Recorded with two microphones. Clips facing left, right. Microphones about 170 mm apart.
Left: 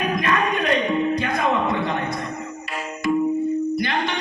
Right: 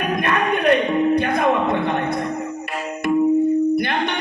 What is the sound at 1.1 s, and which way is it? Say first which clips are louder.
Music: right 4 dB; 60° right (ahead or behind).